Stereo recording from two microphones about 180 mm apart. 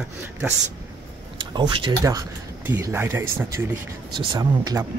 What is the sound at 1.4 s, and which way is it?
Speech, 25° right (ahead or behind).